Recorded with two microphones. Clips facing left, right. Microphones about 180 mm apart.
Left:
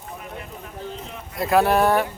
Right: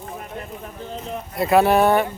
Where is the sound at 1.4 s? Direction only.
Centre (ahead or behind).